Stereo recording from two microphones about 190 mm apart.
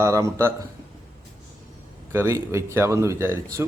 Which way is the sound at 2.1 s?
15° right (ahead or behind).